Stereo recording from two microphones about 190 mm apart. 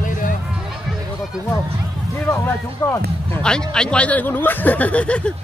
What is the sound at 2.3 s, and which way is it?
Speech, 10° left (ahead or behind).